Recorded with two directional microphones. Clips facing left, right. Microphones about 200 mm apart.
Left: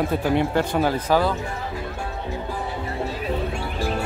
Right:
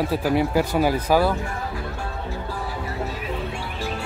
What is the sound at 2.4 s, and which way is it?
Music, 25° left (ahead or behind).